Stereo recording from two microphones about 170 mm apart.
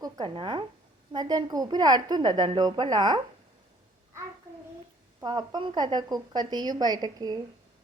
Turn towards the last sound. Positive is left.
turn(degrees=-25)  # may be behind; listen again after turning